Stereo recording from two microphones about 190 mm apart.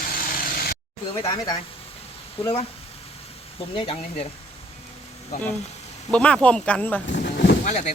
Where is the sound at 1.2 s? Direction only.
20° left (ahead or behind).